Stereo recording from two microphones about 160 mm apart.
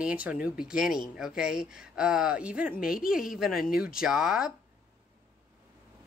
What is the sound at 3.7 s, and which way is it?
Speech, 65° left (ahead or behind).